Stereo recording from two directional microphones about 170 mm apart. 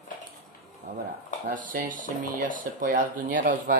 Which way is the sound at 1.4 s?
55° right (ahead or behind).